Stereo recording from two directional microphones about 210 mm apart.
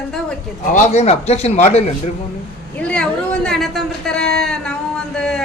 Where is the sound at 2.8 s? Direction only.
5° left (ahead or behind).